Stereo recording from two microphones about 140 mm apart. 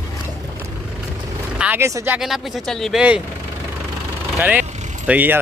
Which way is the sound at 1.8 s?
15° right (ahead or behind).